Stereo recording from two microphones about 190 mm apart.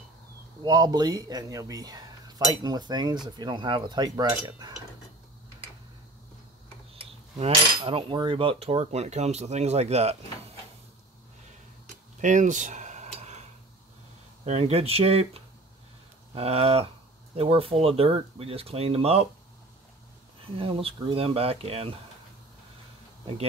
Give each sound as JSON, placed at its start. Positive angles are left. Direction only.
{"t": 0.6, "sound": "speech", "side_deg": -20}
{"t": 7.0, "sound": "cutlery", "side_deg": -30}
{"t": 12.2, "sound": "a sound", "side_deg": -40}
{"t": 14.4, "sound": "cutlery", "side_deg": -30}
{"t": 20.5, "sound": "cutlery", "side_deg": -30}